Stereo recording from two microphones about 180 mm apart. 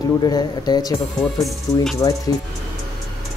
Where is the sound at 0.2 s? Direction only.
20° left (ahead or behind).